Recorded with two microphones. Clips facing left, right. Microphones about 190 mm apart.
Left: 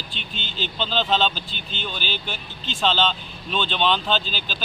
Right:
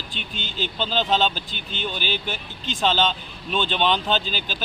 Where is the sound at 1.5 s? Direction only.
55° right (ahead or behind).